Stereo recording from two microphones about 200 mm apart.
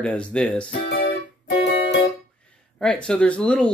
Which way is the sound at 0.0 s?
5° left (ahead or behind).